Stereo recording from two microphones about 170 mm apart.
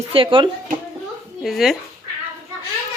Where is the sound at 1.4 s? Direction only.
Centre (ahead or behind).